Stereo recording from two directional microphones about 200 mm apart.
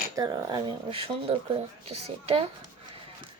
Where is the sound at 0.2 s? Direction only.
20° right (ahead or behind).